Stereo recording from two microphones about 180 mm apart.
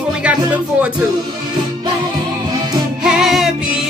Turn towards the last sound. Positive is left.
turn(degrees=0)  # may be behind; listen again after turning